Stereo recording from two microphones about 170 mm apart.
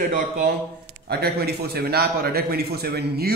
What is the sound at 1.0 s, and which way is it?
A man's voice, 70° right (ahead or behind).